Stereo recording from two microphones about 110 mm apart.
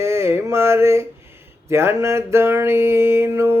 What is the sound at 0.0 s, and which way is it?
Mantra, 25° right (ahead or behind).